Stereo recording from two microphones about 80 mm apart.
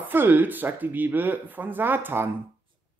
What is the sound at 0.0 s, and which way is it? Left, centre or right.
Speech, right.